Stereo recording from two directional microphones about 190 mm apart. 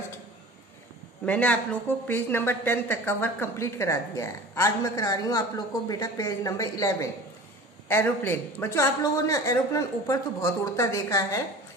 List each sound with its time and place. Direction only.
1.2 s speech: 10° left (ahead or behind)